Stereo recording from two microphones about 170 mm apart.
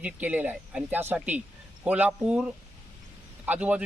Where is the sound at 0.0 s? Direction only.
10° right (ahead or behind).